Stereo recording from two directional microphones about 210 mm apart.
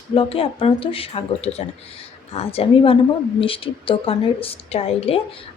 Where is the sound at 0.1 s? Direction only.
25° left (ahead or behind).